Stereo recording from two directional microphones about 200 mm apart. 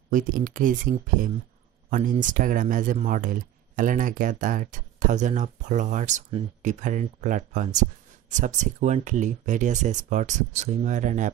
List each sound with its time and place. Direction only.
0.1 s speech: 40° right (ahead or behind)